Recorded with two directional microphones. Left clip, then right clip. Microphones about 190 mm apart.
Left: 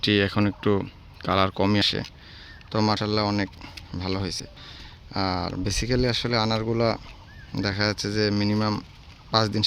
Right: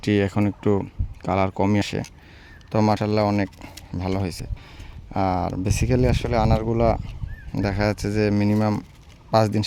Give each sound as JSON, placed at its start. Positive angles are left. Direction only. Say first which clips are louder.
{"t": 0.0, "sound": "speech", "louder": "even", "side_deg": -35}
{"t": 7.5, "sound": "speech", "louder": "right 2 dB", "side_deg": -45}